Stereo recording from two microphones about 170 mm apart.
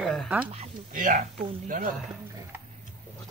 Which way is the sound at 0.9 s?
50° right (ahead or behind).